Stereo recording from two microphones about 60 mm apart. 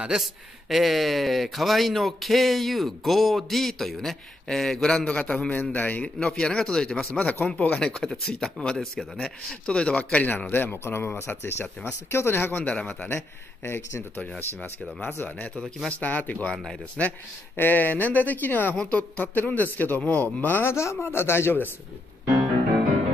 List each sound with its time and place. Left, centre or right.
0.2 s speech: centre
5.0 s speech: centre
5.6 s speech: left
6.0 s speech: centre
7.2 s speech: left
7.9 s speech: centre
10.2 s speech: left
12.6 s speech: centre
13.7 s speech: left
15.2 s speech: left
16.5 s speech: centre
17.6 s speech: left
20.7 s speech: left